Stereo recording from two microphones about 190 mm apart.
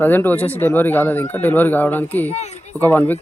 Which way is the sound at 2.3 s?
35° left (ahead or behind).